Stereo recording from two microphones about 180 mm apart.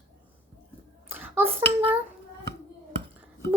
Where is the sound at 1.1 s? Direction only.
10° right (ahead or behind).